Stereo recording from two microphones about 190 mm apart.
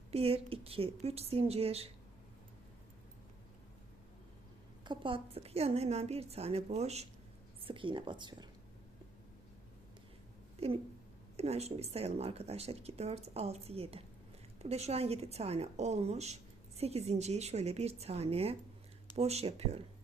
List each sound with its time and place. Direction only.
0.1 s a woman's voice: 30° right (ahead or behind)
4.9 s a woman's voice: 25° right (ahead or behind)
10.6 s a woman's voice: 35° right (ahead or behind)